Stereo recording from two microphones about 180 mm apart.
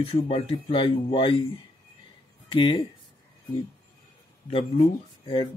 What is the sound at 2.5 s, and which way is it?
Speech, 30° left (ahead or behind).